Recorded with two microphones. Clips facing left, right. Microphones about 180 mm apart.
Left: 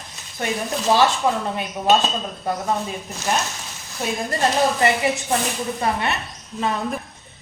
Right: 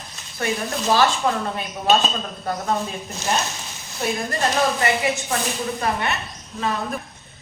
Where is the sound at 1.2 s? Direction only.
5° left (ahead or behind).